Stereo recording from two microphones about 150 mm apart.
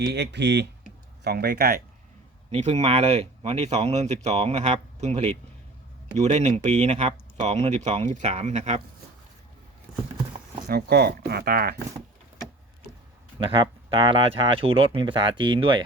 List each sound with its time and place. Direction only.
1.2 s speech: 90° right
2.5 s speech: 50° right (ahead or behind)
10.7 s speech: 90° right
13.4 s speech: 35° right (ahead or behind)